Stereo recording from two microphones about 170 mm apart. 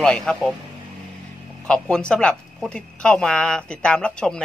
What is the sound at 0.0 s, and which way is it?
Speech, 5° left (ahead or behind).